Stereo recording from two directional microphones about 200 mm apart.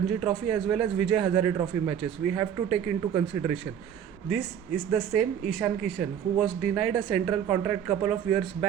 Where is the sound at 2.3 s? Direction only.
15° right (ahead or behind).